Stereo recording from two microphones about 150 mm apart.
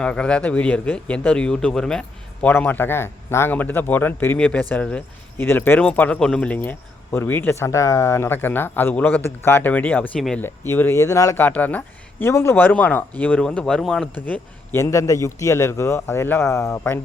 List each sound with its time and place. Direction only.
0.0 s a man's voice: 5° left (ahead or behind)